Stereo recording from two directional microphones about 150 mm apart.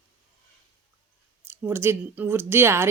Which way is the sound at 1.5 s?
15° right (ahead or behind).